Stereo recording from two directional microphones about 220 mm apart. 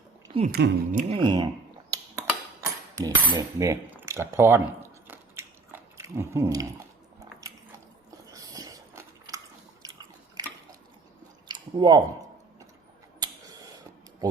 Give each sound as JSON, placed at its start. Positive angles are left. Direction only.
{"t": 0.5, "sound": "speech", "side_deg": -40}
{"t": 1.1, "sound": "speech", "side_deg": -20}
{"t": 2.1, "sound": "cutlery", "side_deg": -15}
{"t": 8.3, "sound": "biting", "side_deg": -15}
{"t": 11.4, "sound": "chewing", "side_deg": -20}
{"t": 13.1, "sound": "a sound", "side_deg": -20}